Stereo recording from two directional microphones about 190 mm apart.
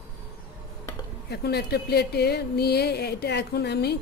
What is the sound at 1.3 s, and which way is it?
Speech, 60° left (ahead or behind).